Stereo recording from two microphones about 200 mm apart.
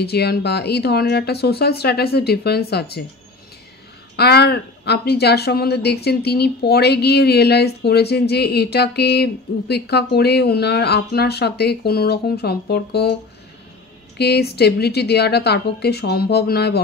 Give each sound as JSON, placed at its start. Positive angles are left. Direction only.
{"t": 0.0, "sound": "speech", "side_deg": 55}
{"t": 4.2, "sound": "a woman's voice", "side_deg": 55}